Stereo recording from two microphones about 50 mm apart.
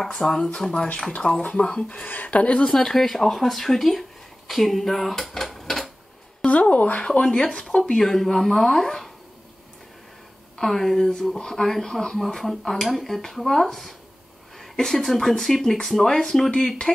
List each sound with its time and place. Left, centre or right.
0.0 s speech: centre
1.2 s speech: left
1.6 s speech: left
2.7 s speech: centre
6.5 s a sound: left
7.2 s speech: centre
7.8 s speech: centre
10.6 s speech: centre
14.8 s speech: centre